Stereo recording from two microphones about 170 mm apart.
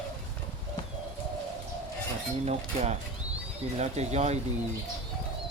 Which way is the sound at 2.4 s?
40° right (ahead or behind).